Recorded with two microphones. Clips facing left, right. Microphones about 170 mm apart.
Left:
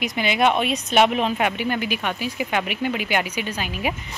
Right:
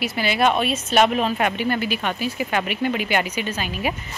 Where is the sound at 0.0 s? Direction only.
15° left (ahead or behind).